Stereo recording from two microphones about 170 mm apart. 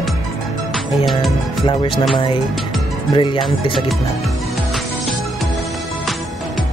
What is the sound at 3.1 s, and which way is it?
Speech, 30° left (ahead or behind).